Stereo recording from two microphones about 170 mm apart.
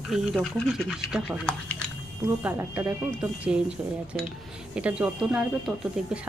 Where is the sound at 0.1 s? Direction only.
Centre (ahead or behind).